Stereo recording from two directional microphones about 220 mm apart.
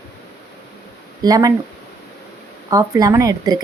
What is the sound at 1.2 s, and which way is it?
Speech, 15° right (ahead or behind).